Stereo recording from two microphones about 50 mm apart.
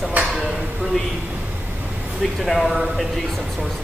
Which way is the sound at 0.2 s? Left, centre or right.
Right.